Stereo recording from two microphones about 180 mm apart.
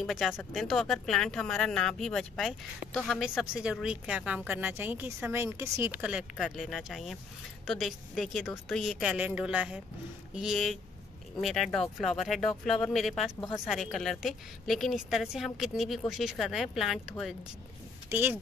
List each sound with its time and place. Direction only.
0.0 s speech: centre (ahead or behind)
18.1 s speech: 10° right (ahead or behind)